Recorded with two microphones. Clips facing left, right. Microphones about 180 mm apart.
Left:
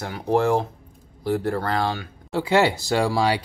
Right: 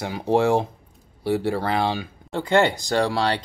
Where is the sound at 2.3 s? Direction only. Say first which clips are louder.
Even; 5° left (ahead or behind).